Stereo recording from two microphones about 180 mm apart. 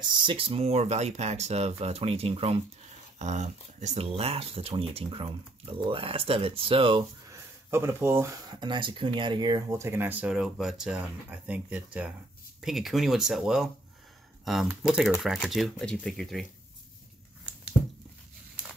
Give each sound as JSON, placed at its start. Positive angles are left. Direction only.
{"t": 0.0, "sound": "speech", "side_deg": -25}
{"t": 7.2, "sound": "speech", "side_deg": -15}